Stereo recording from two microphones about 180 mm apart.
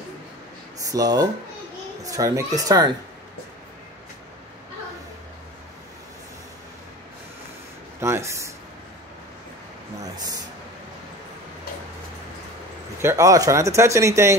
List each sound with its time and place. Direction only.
0.8 s speech: 20° right (ahead or behind)
8.0 s speech: 15° right (ahead or behind)
13.0 s speech: 15° right (ahead or behind)